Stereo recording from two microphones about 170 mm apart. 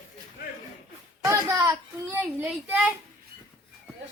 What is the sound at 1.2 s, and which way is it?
A child's voice, 15° right (ahead or behind).